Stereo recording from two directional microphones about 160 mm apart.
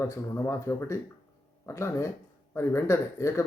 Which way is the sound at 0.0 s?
15° left (ahead or behind).